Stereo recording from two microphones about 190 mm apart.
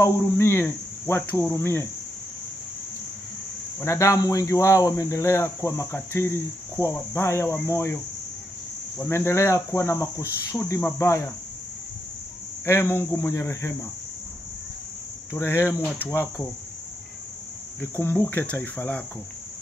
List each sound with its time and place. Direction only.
0.0 s speech: 15° left (ahead or behind)
3.8 s speech: 15° left (ahead or behind)
12.6 s speech: 10° left (ahead or behind)
15.3 s speech: 15° left (ahead or behind)
17.7 s speech: 10° left (ahead or behind)